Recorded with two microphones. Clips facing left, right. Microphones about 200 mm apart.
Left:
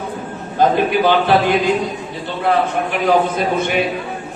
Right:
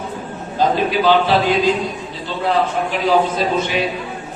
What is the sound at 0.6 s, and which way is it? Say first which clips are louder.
A man's voice: left 2 dB; 55° left (ahead or behind).